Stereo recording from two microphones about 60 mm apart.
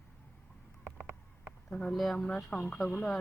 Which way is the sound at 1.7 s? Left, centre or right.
Centre.